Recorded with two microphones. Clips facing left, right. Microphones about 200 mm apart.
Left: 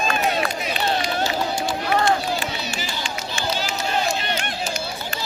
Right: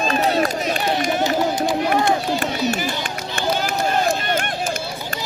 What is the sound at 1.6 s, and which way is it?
Run, 20° right (ahead or behind).